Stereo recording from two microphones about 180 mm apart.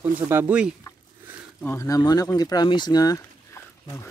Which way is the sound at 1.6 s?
15° left (ahead or behind).